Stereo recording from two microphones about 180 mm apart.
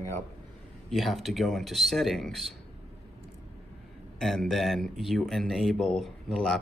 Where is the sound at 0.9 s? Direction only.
Centre (ahead or behind).